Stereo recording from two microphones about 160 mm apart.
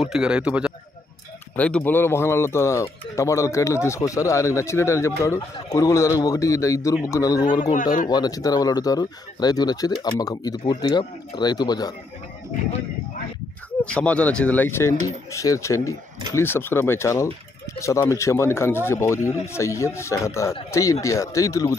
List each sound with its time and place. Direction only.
0.0 s a man's voice: 5° right (ahead or behind)
1.6 s speech: 10° left (ahead or behind)
7.7 s speech: 55° left (ahead or behind)
8.1 s speech: 25° left (ahead or behind)
13.8 s speech: 5° left (ahead or behind)